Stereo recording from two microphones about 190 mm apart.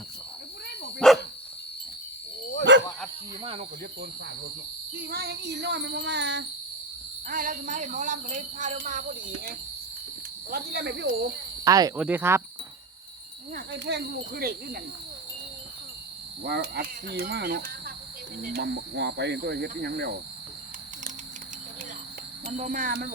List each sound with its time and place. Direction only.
0.9 s dog: centre (ahead or behind)
2.7 s bow-wow: 70° right (ahead or behind)
3.4 s speech: 30° right (ahead or behind)
4.9 s speech: 55° right (ahead or behind)
7.3 s speech: 45° right (ahead or behind)
10.5 s speech: 60° right (ahead or behind)
11.6 s speech: 20° right (ahead or behind)
11.9 s cricket: 10° right (ahead or behind)
13.7 s speech: 65° right (ahead or behind)
16.4 s speech: 60° right (ahead or behind)
22.4 s speech: 45° right (ahead or behind)